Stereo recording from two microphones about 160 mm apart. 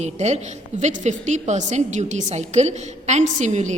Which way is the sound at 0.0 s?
45° right (ahead or behind).